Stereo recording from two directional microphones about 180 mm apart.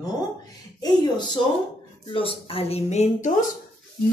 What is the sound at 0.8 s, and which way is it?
Speech, 25° left (ahead or behind).